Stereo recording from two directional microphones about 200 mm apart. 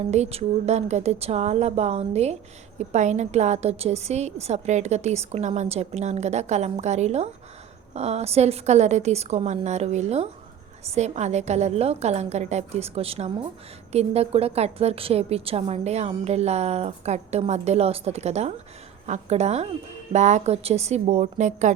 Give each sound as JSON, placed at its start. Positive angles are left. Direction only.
{"t": 0.0, "sound": "speech", "side_deg": -30}